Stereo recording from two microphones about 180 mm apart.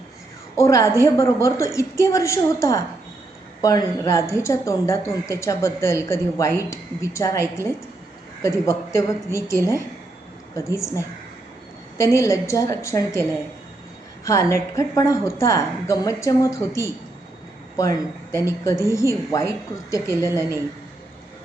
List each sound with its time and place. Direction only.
0.6 s a woman's voice: 15° left (ahead or behind)
14.3 s a woman's voice: 15° left (ahead or behind)
18.3 s a woman's voice: 15° left (ahead or behind)